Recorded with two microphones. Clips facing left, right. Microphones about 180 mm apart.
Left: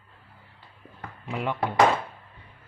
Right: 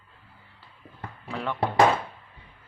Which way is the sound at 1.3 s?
15° left (ahead or behind).